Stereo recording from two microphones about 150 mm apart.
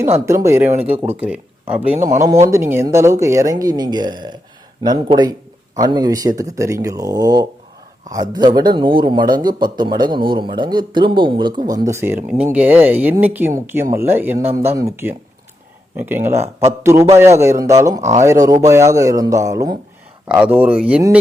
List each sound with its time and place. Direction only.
0.3 s speech: 20° right (ahead or behind)
20.2 s speech: 10° right (ahead or behind)